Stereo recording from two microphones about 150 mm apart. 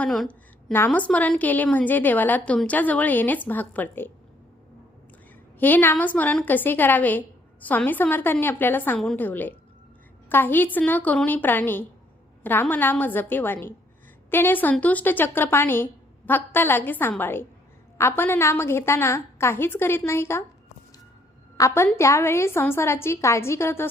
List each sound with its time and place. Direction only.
0.0 s a woman's voice: 5° left (ahead or behind)
5.5 s a woman's voice: 10° left (ahead or behind)
21.6 s a woman's voice: 20° left (ahead or behind)